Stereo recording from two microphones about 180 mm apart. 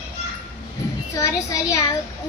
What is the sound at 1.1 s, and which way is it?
Speech, 20° left (ahead or behind).